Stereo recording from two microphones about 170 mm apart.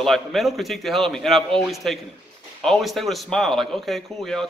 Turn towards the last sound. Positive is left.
turn(degrees=0)  # may be behind; listen again after turning